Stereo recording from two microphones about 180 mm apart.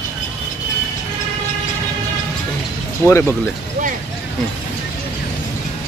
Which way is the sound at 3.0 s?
15° left (ahead or behind).